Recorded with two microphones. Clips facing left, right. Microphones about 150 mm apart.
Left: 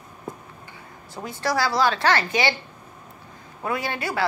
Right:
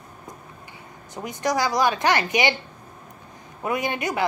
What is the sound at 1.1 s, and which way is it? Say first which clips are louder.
A woman's voice: right 1 dB; 20° right (ahead or behind).